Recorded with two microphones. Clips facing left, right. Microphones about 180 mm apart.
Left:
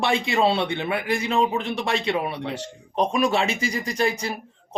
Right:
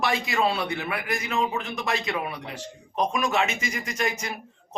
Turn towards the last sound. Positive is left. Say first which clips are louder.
# left 5 dB
turn(degrees=30)  # may be behind; listen again after turning